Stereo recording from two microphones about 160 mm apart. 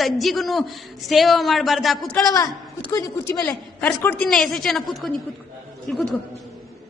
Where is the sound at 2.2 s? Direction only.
25° left (ahead or behind); by 6.1 s centre (ahead or behind).